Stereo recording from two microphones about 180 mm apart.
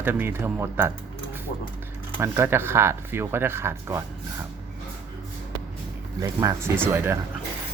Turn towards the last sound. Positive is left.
turn(degrees=-10)  # may be behind; listen again after turning